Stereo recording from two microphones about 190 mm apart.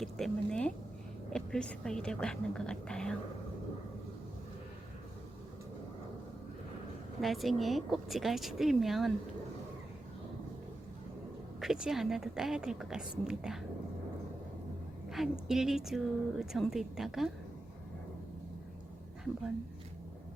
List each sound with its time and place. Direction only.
0.0 s speech: 5° left (ahead or behind)
7.2 s speech: centre (ahead or behind)
11.6 s speech: centre (ahead or behind)
15.1 s speech: centre (ahead or behind)